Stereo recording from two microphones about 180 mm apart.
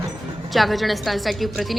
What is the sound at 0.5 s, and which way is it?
A woman's voice, centre (ahead or behind).